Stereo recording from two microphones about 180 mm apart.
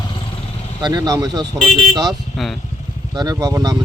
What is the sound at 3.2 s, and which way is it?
Speech, 20° right (ahead or behind).